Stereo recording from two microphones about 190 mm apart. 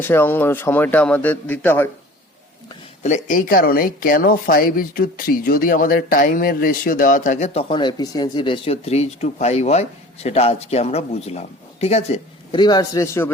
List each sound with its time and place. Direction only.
0.1 s a man's voice: 10° left (ahead or behind)
3.0 s speech: 40° left (ahead or behind); by 13.3 s 15° left (ahead or behind)